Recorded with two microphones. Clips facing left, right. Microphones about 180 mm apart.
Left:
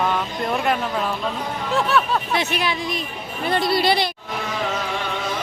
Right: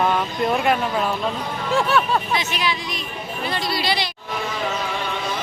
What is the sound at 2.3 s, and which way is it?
Speech, 60° left (ahead or behind).